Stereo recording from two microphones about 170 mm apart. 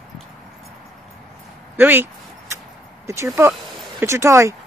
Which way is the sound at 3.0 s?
15° right (ahead or behind).